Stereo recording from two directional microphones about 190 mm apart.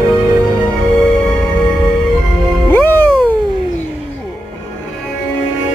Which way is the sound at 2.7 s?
10° left (ahead or behind).